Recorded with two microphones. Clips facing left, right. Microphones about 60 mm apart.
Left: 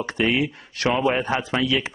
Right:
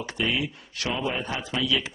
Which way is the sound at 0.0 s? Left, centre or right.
Left.